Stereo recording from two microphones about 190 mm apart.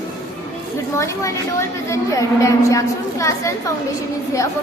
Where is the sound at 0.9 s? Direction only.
15° left (ahead or behind).